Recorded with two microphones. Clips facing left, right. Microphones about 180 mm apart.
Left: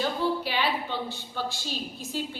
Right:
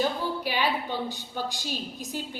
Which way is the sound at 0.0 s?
15° right (ahead or behind).